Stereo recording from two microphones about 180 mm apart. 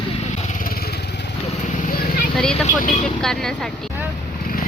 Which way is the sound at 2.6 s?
45° left (ahead or behind).